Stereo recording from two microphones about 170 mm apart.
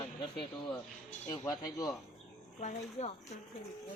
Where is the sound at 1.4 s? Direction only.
20° left (ahead or behind).